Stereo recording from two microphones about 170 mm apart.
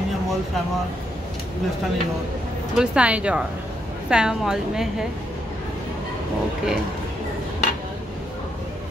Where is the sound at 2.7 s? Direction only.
5° right (ahead or behind).